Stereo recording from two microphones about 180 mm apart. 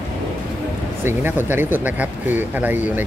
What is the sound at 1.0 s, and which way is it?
Speech, 10° right (ahead or behind).